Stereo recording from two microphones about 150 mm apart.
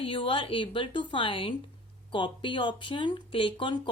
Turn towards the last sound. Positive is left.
turn(degrees=35)  # may be behind; listen again after turning